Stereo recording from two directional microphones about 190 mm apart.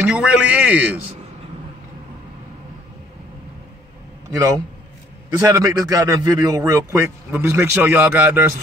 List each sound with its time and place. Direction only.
0.0 s a man's voice: 5° right (ahead or behind)
4.3 s a man's voice: 15° right (ahead or behind)